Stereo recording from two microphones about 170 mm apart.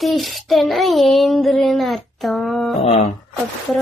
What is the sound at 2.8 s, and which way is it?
Speech, 35° left (ahead or behind).